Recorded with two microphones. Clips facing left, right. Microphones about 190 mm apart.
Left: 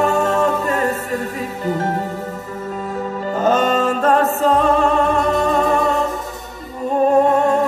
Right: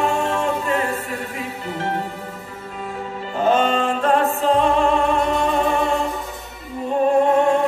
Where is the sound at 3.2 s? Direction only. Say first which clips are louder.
Left 1 dB; 40° left (ahead or behind).